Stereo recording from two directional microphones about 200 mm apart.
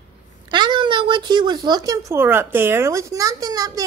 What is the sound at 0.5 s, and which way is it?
Speech, 25° right (ahead or behind).